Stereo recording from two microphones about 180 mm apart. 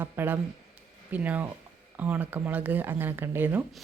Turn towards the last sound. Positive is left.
turn(degrees=-10)  # may be behind; listen again after turning